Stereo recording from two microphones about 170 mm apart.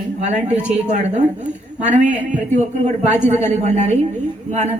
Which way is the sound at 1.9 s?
45° right (ahead or behind).